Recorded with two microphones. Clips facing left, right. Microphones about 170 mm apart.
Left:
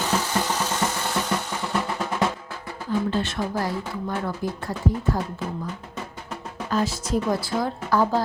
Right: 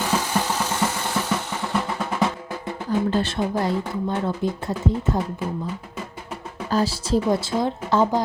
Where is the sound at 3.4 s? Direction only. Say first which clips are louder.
Right 3 dB; 20° right (ahead or behind).